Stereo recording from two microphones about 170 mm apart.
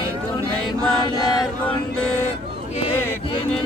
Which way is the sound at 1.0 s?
25° left (ahead or behind).